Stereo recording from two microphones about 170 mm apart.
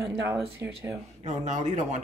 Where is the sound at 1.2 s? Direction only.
45° right (ahead or behind).